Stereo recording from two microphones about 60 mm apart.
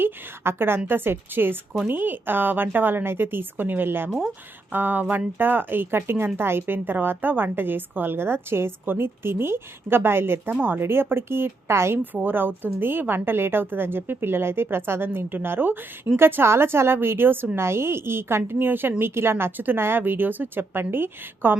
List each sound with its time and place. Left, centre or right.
0.0 s a woman's voice: right
12.1 s a woman's voice: right